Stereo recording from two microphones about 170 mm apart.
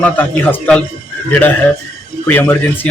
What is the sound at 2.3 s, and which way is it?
Speech, 15° left (ahead or behind).